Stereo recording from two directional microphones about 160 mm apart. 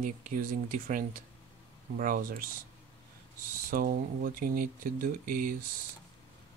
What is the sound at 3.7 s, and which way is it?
Speech, 65° right (ahead or behind).